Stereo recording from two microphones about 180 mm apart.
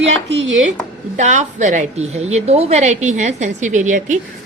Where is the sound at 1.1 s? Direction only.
40° right (ahead or behind).